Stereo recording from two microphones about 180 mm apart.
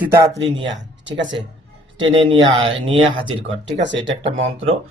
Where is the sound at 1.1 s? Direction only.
85° right.